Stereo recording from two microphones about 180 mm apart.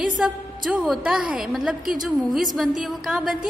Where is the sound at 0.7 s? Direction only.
5° right (ahead or behind).